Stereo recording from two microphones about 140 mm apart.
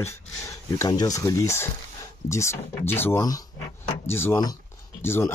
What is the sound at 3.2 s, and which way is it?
Speech, 25° left (ahead or behind).